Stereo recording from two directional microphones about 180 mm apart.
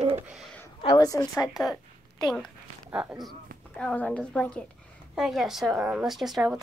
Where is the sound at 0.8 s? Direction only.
30° left (ahead or behind).